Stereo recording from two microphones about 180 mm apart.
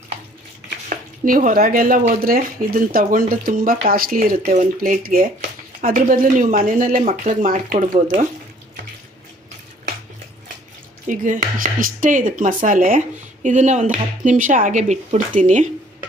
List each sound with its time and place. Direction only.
0.9 s speech: 50° right (ahead or behind)
11.1 s speech: 50° right (ahead or behind)